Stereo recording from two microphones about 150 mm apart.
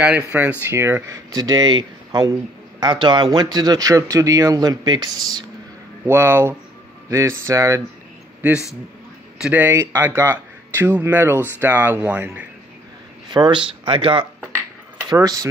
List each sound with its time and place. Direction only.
0.0 s speech: 10° right (ahead or behind); by 5.4 s 25° right (ahead or behind)
6.0 s speech: 15° right (ahead or behind)
9.4 s speech: 10° right (ahead or behind)
13.3 s speech: 30° right (ahead or behind)
15.0 s speech: 25° right (ahead or behind)